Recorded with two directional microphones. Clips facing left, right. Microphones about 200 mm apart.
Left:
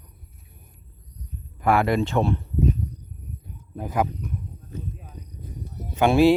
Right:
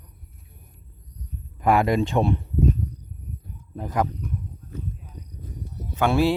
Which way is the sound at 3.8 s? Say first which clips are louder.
Even; 5° left (ahead or behind).